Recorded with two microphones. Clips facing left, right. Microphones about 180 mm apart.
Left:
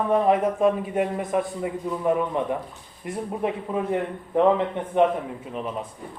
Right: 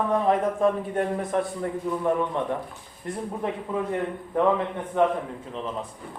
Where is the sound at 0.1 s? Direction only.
15° left (ahead or behind).